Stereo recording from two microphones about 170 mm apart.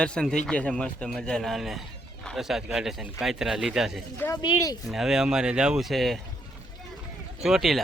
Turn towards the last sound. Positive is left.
turn(degrees=0)  # may be behind; listen again after turning